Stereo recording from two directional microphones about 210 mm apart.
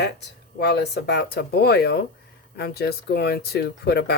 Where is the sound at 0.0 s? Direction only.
50° left (ahead or behind).